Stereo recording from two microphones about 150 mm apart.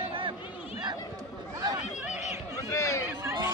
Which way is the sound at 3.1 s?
20° right (ahead or behind).